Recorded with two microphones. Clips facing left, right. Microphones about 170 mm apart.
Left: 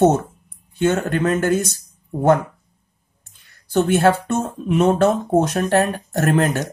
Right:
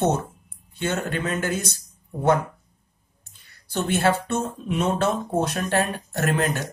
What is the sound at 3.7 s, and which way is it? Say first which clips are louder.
Speech: left 6 dB; 50° left (ahead or behind).